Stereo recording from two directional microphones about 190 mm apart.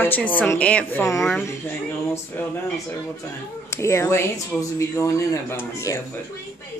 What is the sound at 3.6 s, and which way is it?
Speech, 15° left (ahead or behind).